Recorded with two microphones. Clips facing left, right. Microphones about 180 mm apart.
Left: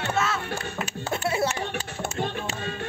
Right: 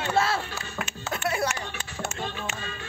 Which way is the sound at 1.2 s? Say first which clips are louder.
Left 2 dB; 25° left (ahead or behind).